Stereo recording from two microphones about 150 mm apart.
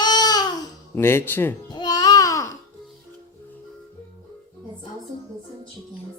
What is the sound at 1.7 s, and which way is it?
Babbling, 30° left (ahead or behind).